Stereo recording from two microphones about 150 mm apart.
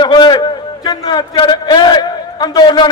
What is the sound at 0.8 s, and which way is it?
A man's voice, 30° left (ahead or behind).